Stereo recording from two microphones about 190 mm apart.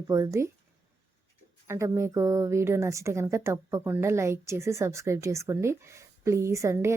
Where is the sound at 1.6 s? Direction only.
15° right (ahead or behind).